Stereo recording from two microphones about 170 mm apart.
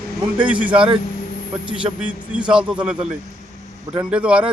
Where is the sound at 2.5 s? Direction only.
5° right (ahead or behind).